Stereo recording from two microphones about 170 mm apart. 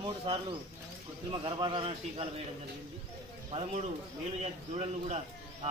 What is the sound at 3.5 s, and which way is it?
Speech, 40° right (ahead or behind).